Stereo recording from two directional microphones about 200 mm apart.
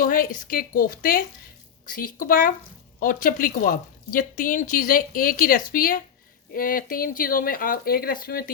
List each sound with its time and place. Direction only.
0.0 s speech: 45° left (ahead or behind)